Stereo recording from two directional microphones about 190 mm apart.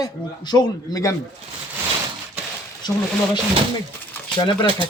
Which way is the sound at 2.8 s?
25° left (ahead or behind).